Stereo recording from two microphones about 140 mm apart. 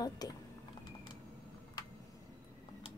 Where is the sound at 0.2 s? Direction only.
25° left (ahead or behind).